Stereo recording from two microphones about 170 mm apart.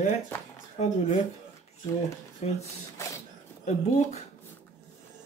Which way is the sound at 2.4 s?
40° left (ahead or behind).